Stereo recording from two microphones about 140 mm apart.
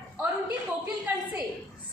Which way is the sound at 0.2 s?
10° right (ahead or behind).